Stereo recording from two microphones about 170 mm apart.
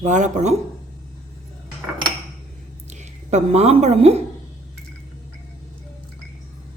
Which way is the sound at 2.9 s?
45° right (ahead or behind).